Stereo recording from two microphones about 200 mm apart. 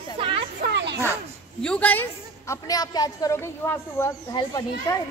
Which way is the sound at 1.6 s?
5° left (ahead or behind).